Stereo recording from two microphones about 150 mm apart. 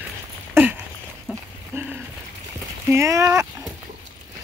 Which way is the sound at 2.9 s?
20° right (ahead or behind).